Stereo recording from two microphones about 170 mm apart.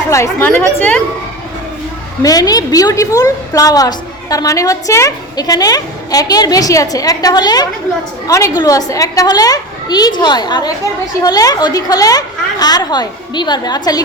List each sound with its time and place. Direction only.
0.1 s a woman's voice: 15° left (ahead or behind)
2.2 s a woman's voice: 20° left (ahead or behind)